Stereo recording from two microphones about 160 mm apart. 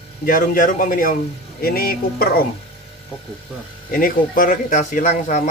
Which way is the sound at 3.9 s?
60° left (ahead or behind).